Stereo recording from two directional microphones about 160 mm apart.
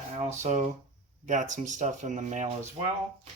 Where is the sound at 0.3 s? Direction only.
45° right (ahead or behind).